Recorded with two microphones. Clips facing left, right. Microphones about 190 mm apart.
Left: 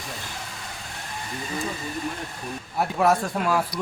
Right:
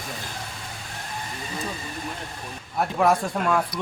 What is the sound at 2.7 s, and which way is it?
Speech, centre (ahead or behind).